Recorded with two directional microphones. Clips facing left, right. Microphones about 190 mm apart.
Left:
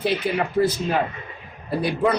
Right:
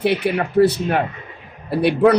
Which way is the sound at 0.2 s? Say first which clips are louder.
Right 6 dB; 65° right (ahead or behind).